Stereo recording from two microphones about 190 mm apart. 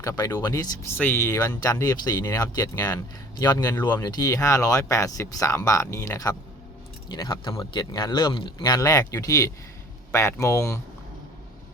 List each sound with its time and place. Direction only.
0.0 s speech: 15° left (ahead or behind)